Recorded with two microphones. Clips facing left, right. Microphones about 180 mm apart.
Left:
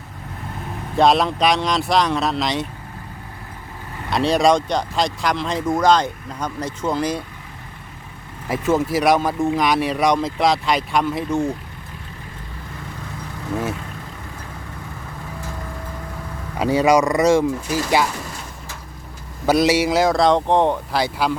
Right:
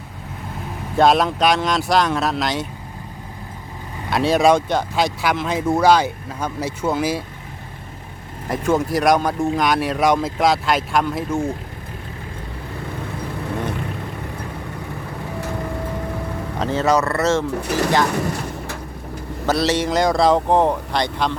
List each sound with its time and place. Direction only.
0.9 s speech: centre (ahead or behind)
4.1 s speech: centre (ahead or behind)
8.4 s speech: centre (ahead or behind)
16.6 s speech: 10° left (ahead or behind)
18.1 s a sound: 65° right (ahead or behind)
19.5 s speech: 10° left (ahead or behind)